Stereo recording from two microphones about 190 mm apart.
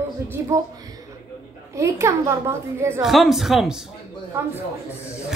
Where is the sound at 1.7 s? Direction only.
15° right (ahead or behind).